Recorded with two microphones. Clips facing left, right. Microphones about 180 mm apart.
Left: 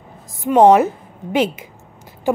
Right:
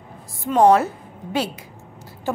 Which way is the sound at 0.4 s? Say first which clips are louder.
Left 4 dB; 20° left (ahead or behind).